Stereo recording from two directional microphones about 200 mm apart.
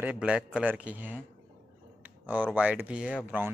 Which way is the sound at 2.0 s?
10° right (ahead or behind).